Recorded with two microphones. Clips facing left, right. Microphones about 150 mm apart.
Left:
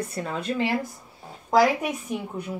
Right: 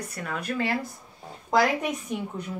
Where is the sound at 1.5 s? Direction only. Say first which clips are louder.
Left 3 dB; 5° left (ahead or behind).